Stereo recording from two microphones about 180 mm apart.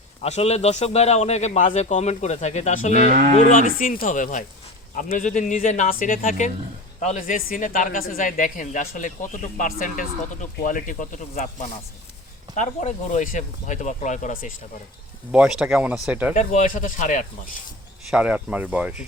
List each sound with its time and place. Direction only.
0.2 s a man's voice: 35° left (ahead or behind)
12.5 s speech: 45° left (ahead or behind)
15.3 s speech: 5° right (ahead or behind)
16.3 s speech: 40° left (ahead or behind)
18.1 s speech: 5° right (ahead or behind)